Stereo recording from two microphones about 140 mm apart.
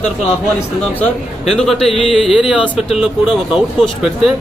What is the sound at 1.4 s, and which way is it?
Speech, centre (ahead or behind).